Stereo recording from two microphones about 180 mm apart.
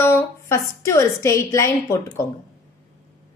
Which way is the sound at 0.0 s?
15° left (ahead or behind).